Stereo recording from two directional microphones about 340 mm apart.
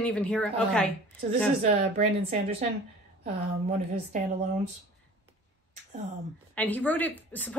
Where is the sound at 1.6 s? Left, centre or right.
Right.